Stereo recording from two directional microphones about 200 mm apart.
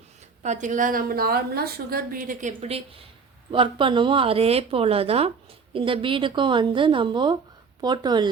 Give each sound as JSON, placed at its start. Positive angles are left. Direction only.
{"t": 0.4, "sound": "a woman's voice", "side_deg": -35}